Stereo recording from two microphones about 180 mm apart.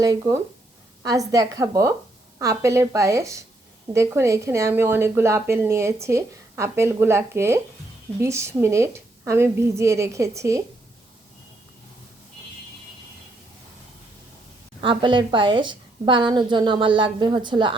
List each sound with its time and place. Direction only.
0.0 s a woman's voice: 15° right (ahead or behind)
14.8 s a woman's voice: 25° right (ahead or behind)